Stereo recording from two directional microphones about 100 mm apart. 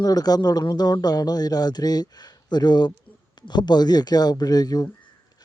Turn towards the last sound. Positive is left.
turn(degrees=40)  # may be behind; listen again after turning